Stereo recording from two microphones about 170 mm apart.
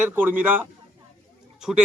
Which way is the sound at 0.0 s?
10° right (ahead or behind).